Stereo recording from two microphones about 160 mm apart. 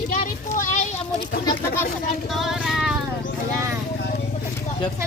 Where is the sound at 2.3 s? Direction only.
Centre (ahead or behind).